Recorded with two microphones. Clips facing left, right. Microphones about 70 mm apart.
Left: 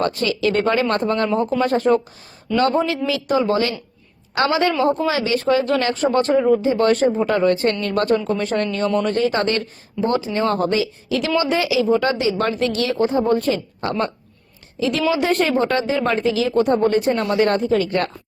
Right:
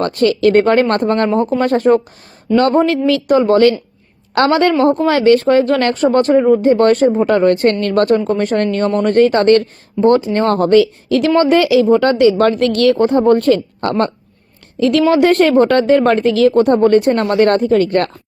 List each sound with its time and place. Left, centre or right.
0.0 s speech: right
4.4 s speech: right
11.4 s speech: right
15.1 s speech: right